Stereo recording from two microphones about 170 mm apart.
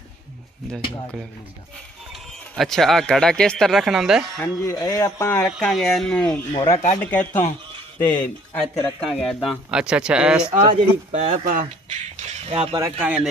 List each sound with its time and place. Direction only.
2.5 s speech: centre (ahead or behind)
4.4 s speech: 15° left (ahead or behind)
5.5 s speech: centre (ahead or behind)
6.5 s speech: 20° left (ahead or behind)
7.0 s speech: 10° left (ahead or behind)
10.6 s speech: 30° right (ahead or behind)
11.1 s a sound: 50° right (ahead or behind)
12.4 s speech: 35° right (ahead or behind)
13.0 s speech: 5° right (ahead or behind)